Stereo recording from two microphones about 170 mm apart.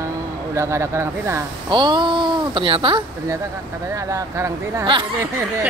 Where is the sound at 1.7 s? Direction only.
25° right (ahead or behind).